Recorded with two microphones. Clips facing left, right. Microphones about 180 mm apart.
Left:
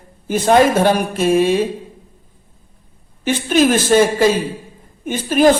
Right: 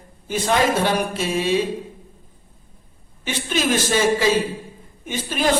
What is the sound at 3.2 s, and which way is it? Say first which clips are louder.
Speech: left 8 dB; 50° left (ahead or behind).